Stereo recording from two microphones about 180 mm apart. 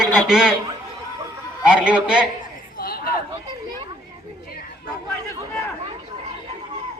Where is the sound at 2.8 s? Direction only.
55° left (ahead or behind).